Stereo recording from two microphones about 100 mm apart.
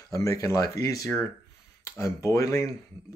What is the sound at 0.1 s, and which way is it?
Speech, 30° left (ahead or behind).